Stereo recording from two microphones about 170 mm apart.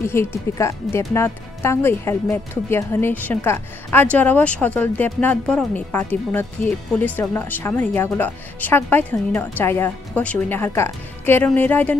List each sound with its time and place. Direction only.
0.0 s speech: 15° left (ahead or behind)